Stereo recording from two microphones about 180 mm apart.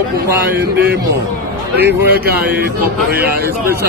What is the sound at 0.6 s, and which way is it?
A man's voice, 60° right (ahead or behind).